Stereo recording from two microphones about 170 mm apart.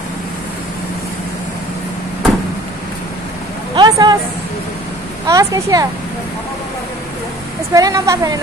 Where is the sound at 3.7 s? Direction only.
25° right (ahead or behind).